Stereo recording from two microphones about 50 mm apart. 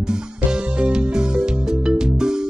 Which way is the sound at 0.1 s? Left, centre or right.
Centre.